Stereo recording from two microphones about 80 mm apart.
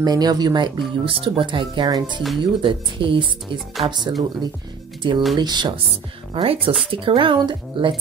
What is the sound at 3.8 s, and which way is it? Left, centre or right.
Speech, right.